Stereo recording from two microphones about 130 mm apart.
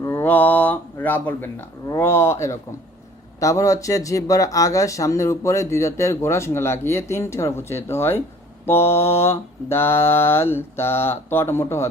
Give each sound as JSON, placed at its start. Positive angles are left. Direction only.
{"t": 0.0, "sound": "speech", "side_deg": 20}